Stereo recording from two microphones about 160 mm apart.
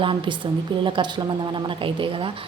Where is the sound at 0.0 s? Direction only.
30° right (ahead or behind).